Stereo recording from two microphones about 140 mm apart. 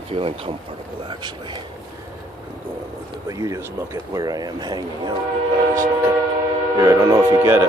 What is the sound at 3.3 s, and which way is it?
Speech, 25° right (ahead or behind).